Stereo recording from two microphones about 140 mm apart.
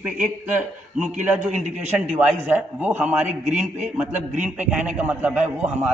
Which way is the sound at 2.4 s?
10° right (ahead or behind).